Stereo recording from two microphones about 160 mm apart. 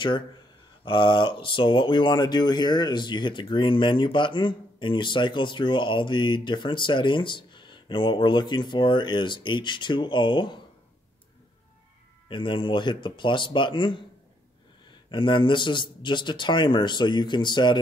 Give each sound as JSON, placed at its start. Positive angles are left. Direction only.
{"t": 0.8, "sound": "speech", "side_deg": 30}
{"t": 12.3, "sound": "speech", "side_deg": 30}